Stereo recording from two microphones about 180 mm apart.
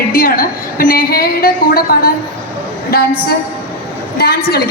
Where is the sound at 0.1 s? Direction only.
50° left (ahead or behind).